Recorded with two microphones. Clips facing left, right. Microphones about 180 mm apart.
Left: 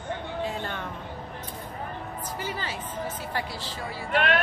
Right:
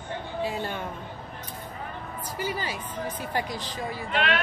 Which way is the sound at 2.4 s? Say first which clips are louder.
Right 4 dB; 10° right (ahead or behind).